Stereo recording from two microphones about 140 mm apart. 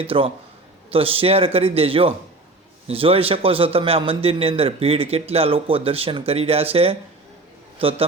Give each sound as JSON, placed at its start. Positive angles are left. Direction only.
{"t": 0.0, "sound": "a man's voice", "side_deg": -40}